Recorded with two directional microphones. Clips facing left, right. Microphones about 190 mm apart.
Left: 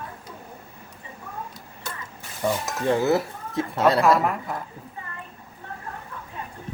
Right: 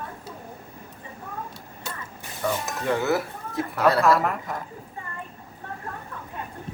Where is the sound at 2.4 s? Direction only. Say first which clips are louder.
Left 2 dB; 20° left (ahead or behind).